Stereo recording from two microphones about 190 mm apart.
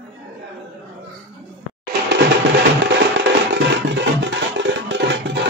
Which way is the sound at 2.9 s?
65° right (ahead or behind).